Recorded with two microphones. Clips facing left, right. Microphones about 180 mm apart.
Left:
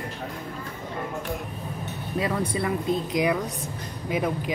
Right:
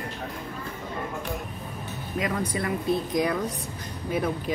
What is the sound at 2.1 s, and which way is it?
Speech, 30° left (ahead or behind).